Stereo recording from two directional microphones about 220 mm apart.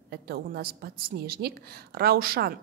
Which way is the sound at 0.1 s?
45° right (ahead or behind).